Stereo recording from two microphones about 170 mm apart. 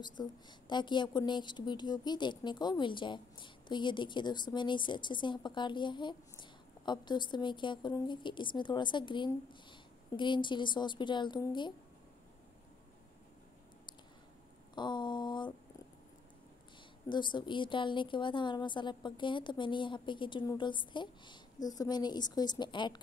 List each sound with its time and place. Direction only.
0.0 s a woman's voice: 25° left (ahead or behind)
14.8 s a woman's voice: 25° left (ahead or behind)
17.1 s a woman's voice: 25° left (ahead or behind)